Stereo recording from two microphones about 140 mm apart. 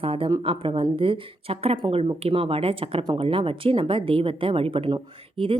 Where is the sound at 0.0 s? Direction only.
40° right (ahead or behind).